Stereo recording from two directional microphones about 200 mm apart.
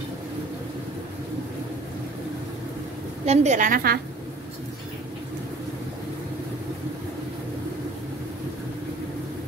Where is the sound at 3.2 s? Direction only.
35° right (ahead or behind).